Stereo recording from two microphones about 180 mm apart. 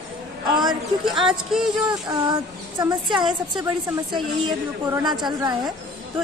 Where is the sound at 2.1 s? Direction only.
25° right (ahead or behind).